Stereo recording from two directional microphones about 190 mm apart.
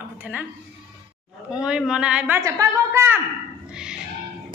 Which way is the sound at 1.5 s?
5° right (ahead or behind).